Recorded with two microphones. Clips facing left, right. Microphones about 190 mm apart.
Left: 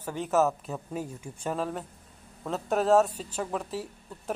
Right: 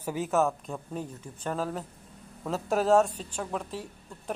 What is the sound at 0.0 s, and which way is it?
Speech, 5° right (ahead or behind).